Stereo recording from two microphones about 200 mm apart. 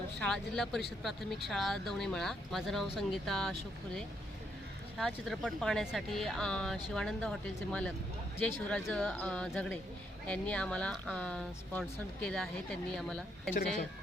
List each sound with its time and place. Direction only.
0.2 s speech: 5° left (ahead or behind)
13.5 s speech: 40° left (ahead or behind)